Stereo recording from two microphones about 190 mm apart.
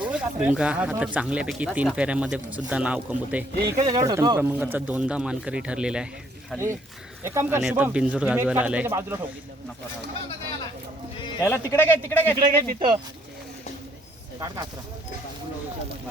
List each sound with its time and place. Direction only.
0.1 s speech: 5° right (ahead or behind)
3.8 s speech: 20° right (ahead or behind); by 6.7 s 5° left (ahead or behind)
7.3 s speech: 10° right (ahead or behind)
11.4 s a man's voice: 15° left (ahead or behind)
12.4 s speech: 25° right (ahead or behind)
14.3 s speech: 20° right (ahead or behind)